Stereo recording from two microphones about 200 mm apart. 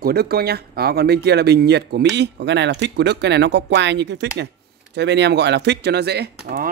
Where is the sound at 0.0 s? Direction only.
50° right (ahead or behind).